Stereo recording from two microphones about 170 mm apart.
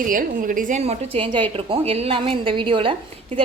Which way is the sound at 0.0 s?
55° right (ahead or behind).